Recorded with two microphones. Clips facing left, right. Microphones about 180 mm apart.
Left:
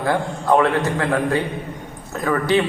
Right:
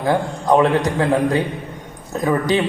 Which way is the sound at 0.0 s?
15° right (ahead or behind).